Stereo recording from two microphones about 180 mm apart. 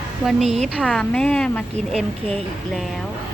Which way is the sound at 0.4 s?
40° right (ahead or behind).